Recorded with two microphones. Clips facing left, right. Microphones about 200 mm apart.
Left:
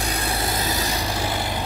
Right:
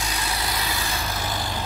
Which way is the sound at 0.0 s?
55° left (ahead or behind).